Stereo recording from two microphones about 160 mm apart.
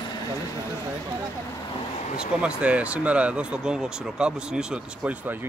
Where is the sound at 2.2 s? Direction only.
5° right (ahead or behind).